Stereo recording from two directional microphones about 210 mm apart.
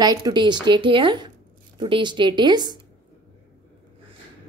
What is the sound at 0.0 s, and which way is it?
A woman's voice, 20° right (ahead or behind).